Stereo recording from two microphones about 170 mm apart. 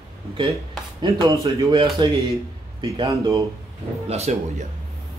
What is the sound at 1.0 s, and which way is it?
Speech, 25° right (ahead or behind).